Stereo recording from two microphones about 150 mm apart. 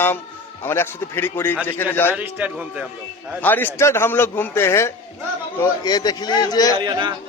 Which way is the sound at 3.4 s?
15° left (ahead or behind).